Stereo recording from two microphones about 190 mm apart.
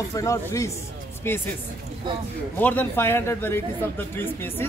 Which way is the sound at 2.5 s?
10° left (ahead or behind).